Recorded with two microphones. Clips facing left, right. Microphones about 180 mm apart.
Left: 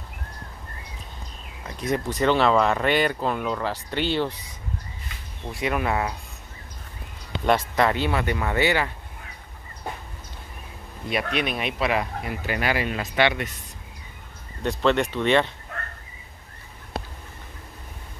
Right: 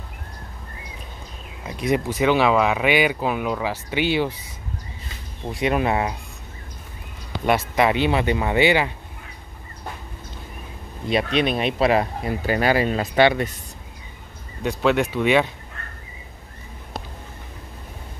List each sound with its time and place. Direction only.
1.7 s speech: 15° right (ahead or behind)
5.6 s speech: 20° right (ahead or behind)
7.4 s speech: 10° right (ahead or behind)
11.1 s speech: 25° right (ahead or behind)
14.6 s speech: 5° right (ahead or behind)
15.8 s a sound: 65° left (ahead or behind)